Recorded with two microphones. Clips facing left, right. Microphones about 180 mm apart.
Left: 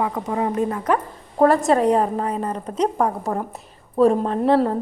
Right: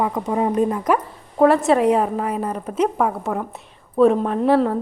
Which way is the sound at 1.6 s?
5° right (ahead or behind).